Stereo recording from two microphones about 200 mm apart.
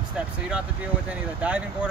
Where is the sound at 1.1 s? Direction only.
5° right (ahead or behind).